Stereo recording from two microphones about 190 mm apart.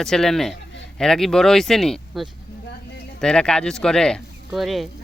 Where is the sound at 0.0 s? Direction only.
Centre (ahead or behind).